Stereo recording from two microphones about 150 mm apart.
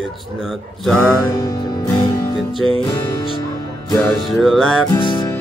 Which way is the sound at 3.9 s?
Centre (ahead or behind).